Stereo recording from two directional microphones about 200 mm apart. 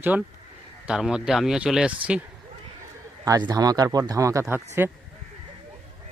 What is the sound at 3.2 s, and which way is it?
Speech, 20° right (ahead or behind).